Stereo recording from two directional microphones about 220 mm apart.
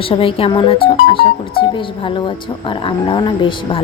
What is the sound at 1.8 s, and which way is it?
Speech, 20° left (ahead or behind).